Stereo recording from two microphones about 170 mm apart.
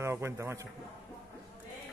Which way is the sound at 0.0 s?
15° right (ahead or behind).